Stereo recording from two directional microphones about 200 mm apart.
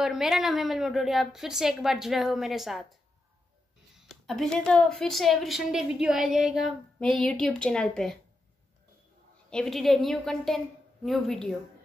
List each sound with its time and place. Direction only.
0.0 s a woman's voice: centre (ahead or behind)
9.5 s a woman's voice: 5° left (ahead or behind)